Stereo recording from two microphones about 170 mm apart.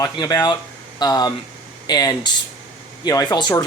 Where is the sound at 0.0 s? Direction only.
20° left (ahead or behind).